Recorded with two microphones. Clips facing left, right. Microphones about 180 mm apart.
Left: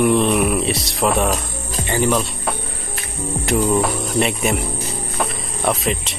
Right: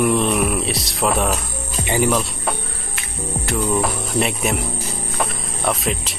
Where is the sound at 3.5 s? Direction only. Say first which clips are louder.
Left 4 dB; 20° left (ahead or behind).